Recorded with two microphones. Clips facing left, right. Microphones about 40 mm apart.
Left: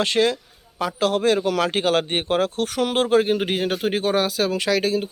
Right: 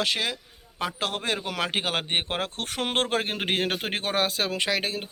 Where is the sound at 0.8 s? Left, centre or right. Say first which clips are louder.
Left 8 dB; right.